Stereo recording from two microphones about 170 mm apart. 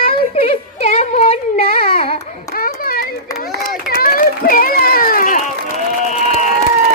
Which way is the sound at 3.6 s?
60° left (ahead or behind).